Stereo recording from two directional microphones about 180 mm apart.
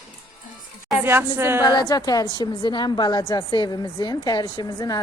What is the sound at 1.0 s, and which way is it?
Speech, 15° right (ahead or behind).